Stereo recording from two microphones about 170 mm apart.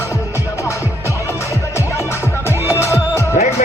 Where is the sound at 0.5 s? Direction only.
15° left (ahead or behind).